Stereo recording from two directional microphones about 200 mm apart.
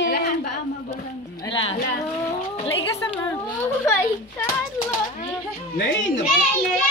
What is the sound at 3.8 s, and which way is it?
Speech, 10° left (ahead or behind).